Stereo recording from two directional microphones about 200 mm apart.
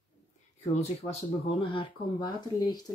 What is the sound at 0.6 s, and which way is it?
Speech, 30° left (ahead or behind).